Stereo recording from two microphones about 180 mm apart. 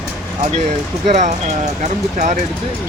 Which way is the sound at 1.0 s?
40° right (ahead or behind).